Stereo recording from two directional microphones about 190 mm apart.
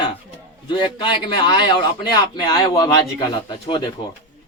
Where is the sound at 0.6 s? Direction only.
25° left (ahead or behind).